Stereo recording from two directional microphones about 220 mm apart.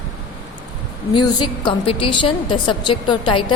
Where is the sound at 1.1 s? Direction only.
20° left (ahead or behind).